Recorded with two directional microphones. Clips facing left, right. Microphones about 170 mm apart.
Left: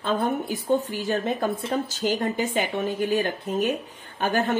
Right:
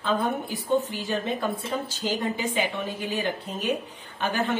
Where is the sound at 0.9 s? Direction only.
45° left (ahead or behind).